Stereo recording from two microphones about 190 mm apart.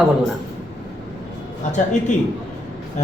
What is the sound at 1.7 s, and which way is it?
Speech, 40° left (ahead or behind).